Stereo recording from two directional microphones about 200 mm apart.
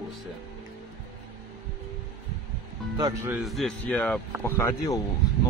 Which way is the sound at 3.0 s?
15° right (ahead or behind).